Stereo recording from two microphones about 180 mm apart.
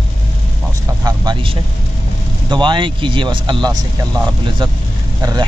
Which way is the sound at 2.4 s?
25° right (ahead or behind).